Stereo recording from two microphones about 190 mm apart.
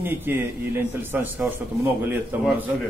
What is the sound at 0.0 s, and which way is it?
A man's voice, 10° right (ahead or behind).